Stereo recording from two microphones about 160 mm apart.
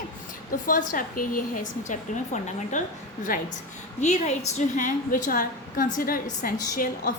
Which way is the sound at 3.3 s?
60° left (ahead or behind).